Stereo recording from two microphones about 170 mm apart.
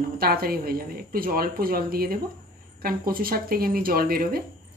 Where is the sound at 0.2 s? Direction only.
60° right (ahead or behind).